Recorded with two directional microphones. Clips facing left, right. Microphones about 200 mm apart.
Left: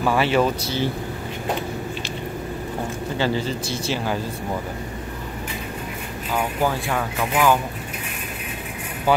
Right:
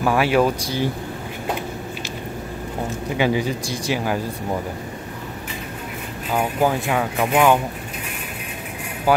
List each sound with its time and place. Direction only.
0.0 s speech: 5° right (ahead or behind)
3.2 s speech: 15° right (ahead or behind)
6.3 s speech: 15° right (ahead or behind)